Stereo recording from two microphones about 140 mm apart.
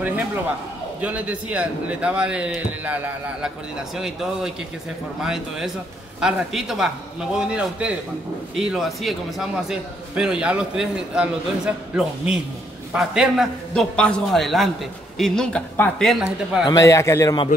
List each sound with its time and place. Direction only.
1.0 s a man's voice: 10° right (ahead or behind)
16.6 s a man's voice: 25° left (ahead or behind)